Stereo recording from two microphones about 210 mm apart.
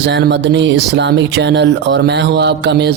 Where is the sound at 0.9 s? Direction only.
55° right (ahead or behind).